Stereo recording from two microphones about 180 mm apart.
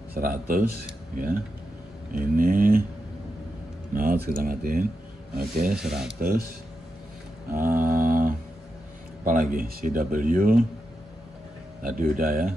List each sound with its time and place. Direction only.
0.1 s speech: 55° right (ahead or behind)
3.9 s speech: 50° right (ahead or behind)
5.7 s speech: 5° right (ahead or behind)
6.0 s speech: 55° right (ahead or behind)
7.5 s mantra: 50° right (ahead or behind)
9.2 s speech: 50° right (ahead or behind)
11.8 s speech: 50° right (ahead or behind)